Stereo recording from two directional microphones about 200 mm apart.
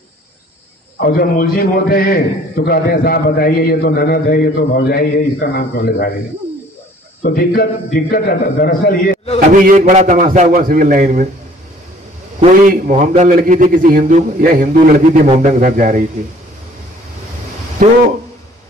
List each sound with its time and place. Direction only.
0.9 s a man's voice: 50° left (ahead or behind)
7.2 s a man's voice: 50° left (ahead or behind)
9.5 s a man's voice: 40° right (ahead or behind)
12.4 s a man's voice: 40° right (ahead or behind)
17.8 s a man's voice: 40° right (ahead or behind)